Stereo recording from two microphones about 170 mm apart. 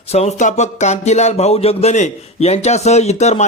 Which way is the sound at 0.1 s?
40° left (ahead or behind).